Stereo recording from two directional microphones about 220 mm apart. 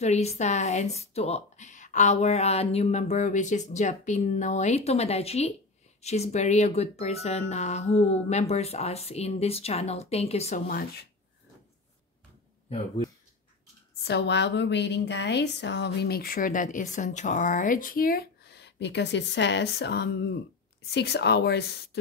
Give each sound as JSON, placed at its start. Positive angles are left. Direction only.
{"t": 0.0, "sound": "speech", "side_deg": 30}
{"t": 10.7, "sound": "speech", "side_deg": 40}
{"t": 12.6, "sound": "speech", "side_deg": 25}
{"t": 14.0, "sound": "a woman's voice", "side_deg": 50}